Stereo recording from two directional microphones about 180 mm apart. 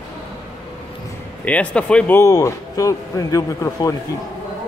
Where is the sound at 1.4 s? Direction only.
5° left (ahead or behind).